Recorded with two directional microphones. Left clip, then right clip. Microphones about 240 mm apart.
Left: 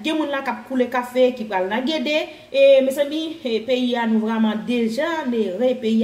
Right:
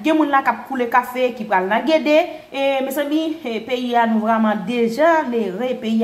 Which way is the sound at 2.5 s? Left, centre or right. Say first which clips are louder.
Left 8 dB; right.